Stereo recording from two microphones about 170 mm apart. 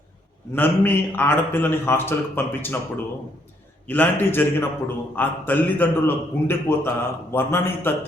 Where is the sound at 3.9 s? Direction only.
10° left (ahead or behind).